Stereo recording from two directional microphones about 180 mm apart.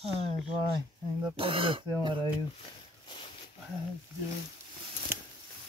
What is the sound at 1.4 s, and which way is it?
Speech, 30° right (ahead or behind).